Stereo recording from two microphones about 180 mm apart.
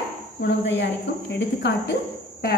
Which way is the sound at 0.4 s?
75° left (ahead or behind).